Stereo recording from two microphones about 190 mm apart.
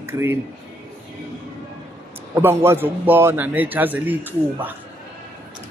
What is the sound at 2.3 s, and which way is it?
Speech, 15° right (ahead or behind).